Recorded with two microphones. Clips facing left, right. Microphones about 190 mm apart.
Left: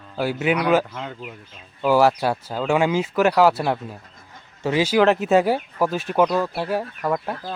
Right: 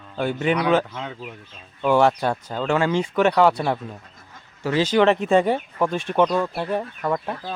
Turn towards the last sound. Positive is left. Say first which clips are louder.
# left 1 dB
turn(degrees=0)  # may be behind; listen again after turning